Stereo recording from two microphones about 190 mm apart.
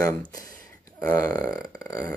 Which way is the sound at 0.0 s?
15° left (ahead or behind).